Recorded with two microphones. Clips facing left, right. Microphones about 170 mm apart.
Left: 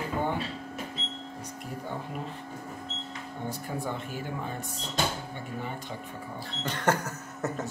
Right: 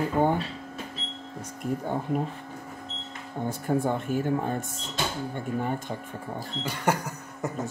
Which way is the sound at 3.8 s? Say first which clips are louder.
Right 8 dB; 50° right (ahead or behind).